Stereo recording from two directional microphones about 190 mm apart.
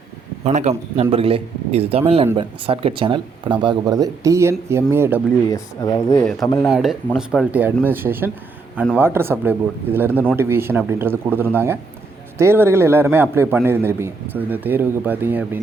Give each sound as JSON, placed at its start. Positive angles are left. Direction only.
{"t": 0.4, "sound": "a man's voice", "side_deg": -35}
{"t": 5.5, "sound": "speech", "side_deg": 15}
{"t": 6.7, "sound": "a man's voice", "side_deg": 0}